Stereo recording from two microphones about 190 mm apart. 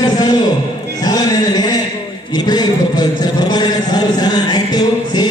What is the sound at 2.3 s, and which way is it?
A man's voice, 20° left (ahead or behind).